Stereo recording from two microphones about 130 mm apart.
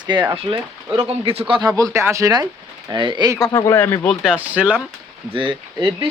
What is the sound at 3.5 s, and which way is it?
Speech, 30° left (ahead or behind).